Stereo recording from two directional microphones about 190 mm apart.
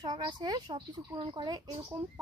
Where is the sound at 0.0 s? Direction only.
20° right (ahead or behind).